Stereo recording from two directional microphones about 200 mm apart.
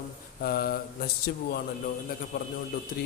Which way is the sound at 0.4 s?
50° left (ahead or behind).